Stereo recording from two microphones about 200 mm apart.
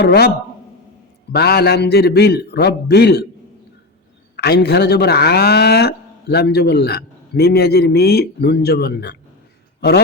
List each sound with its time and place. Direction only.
0.0 s speech: 55° left (ahead or behind)
1.3 s a man's voice: 55° left (ahead or behind)
4.4 s speech: 55° left (ahead or behind)